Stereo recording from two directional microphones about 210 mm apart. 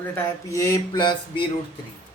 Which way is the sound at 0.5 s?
15° left (ahead or behind).